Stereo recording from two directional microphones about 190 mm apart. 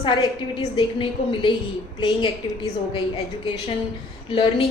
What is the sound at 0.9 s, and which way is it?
Speech, 25° left (ahead or behind).